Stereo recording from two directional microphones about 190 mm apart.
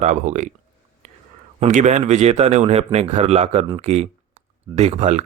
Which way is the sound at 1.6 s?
40° right (ahead or behind).